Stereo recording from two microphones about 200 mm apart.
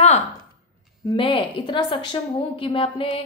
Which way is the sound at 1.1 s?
25° left (ahead or behind).